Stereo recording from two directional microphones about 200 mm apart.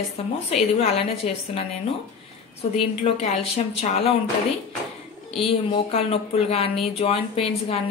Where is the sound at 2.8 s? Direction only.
30° left (ahead or behind).